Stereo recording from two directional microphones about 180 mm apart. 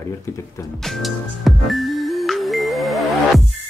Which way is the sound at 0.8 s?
Centre (ahead or behind).